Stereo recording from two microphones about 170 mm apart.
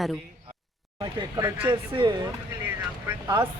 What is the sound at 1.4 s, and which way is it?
Speech, 15° right (ahead or behind).